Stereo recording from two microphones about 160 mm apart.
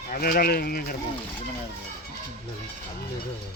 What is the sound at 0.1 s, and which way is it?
Speech, 65° left (ahead or behind).